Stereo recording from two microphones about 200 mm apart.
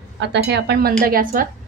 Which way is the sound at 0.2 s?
60° right (ahead or behind).